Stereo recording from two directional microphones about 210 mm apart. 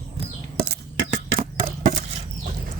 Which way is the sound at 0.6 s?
45° right (ahead or behind).